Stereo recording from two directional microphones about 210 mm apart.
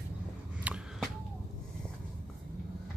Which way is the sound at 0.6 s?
5° right (ahead or behind).